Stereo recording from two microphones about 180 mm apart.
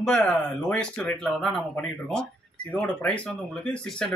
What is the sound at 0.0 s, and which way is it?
Speech, 5° left (ahead or behind).